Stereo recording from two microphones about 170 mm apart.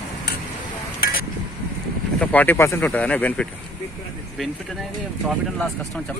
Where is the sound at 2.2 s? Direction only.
10° left (ahead or behind).